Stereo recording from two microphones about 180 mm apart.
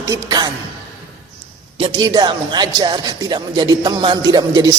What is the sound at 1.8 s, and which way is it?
A man's voice, 25° right (ahead or behind).